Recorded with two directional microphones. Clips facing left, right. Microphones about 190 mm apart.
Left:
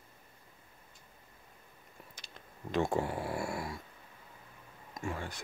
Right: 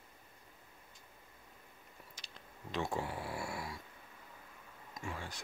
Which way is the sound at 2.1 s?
55° left (ahead or behind).